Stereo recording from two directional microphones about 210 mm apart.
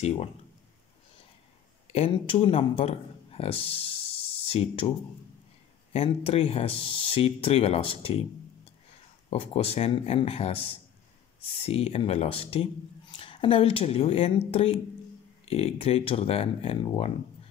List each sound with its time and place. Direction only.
1.9 s speech: 25° left (ahead or behind)
5.9 s speech: 30° left (ahead or behind)
9.3 s speech: 30° left (ahead or behind)